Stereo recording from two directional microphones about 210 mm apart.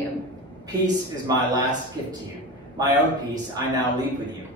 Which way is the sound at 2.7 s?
20° right (ahead or behind).